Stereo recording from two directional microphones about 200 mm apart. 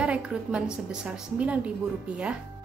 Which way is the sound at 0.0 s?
5° right (ahead or behind).